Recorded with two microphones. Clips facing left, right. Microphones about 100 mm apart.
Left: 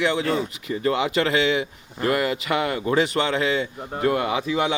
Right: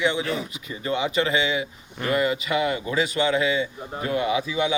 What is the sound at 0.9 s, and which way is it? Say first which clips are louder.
Speech: left 2 dB; 80° left.